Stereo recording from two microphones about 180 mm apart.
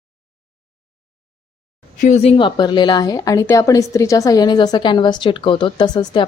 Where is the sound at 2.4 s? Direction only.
25° left (ahead or behind).